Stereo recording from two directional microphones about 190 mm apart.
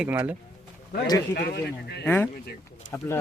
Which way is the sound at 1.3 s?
60° left (ahead or behind).